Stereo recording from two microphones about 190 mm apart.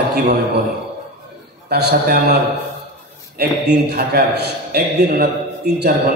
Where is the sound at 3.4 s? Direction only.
55° right (ahead or behind).